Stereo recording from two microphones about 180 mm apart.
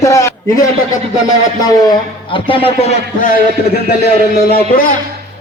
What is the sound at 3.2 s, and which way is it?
Speech, 55° left (ahead or behind).